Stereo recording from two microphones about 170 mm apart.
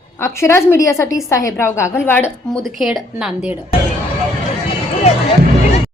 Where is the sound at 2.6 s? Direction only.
Centre (ahead or behind).